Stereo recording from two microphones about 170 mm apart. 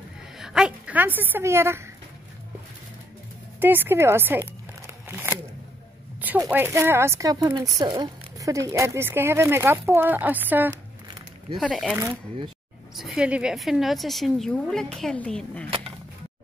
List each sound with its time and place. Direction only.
0.4 s a woman's voice: 5° right (ahead or behind)
3.5 s speech: 10° right (ahead or behind)
5.0 s a sound: 10° right (ahead or behind)
6.2 s speech: 10° right (ahead or behind)
11.5 s a woman's voice: centre (ahead or behind)